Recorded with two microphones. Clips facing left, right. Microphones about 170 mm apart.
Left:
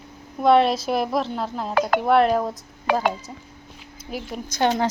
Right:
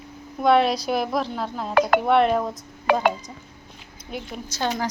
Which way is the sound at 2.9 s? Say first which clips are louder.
Right 1 dB; 60° right (ahead or behind).